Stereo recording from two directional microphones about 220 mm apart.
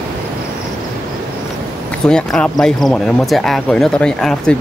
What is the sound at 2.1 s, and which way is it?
Speech, 5° left (ahead or behind).